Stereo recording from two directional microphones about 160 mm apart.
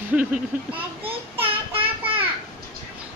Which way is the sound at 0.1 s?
10° right (ahead or behind).